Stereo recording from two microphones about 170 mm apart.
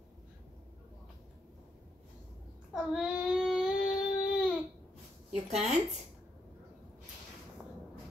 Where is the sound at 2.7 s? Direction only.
5° right (ahead or behind).